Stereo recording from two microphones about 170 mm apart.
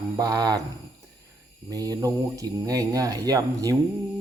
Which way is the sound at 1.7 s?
20° right (ahead or behind).